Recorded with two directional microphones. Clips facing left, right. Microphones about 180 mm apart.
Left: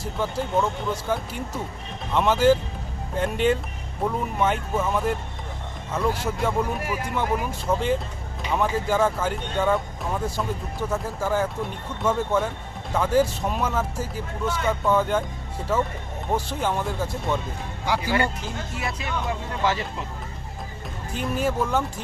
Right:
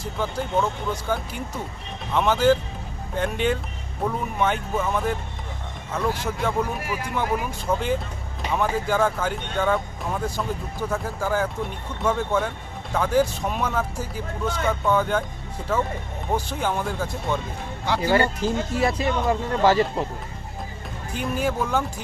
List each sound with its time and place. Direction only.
0.0 s speech: 5° left (ahead or behind)
16.3 s speech: centre (ahead or behind)
17.8 s speech: 10° left (ahead or behind)
18.1 s speech: 35° right (ahead or behind)
21.1 s speech: centre (ahead or behind)